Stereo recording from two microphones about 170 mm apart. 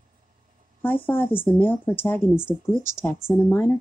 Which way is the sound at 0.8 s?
10° left (ahead or behind).